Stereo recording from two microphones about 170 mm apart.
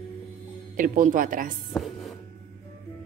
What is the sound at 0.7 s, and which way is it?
Speech, 55° right (ahead or behind).